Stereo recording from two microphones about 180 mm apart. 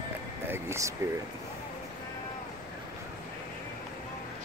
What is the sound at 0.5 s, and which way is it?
Speech, 15° right (ahead or behind).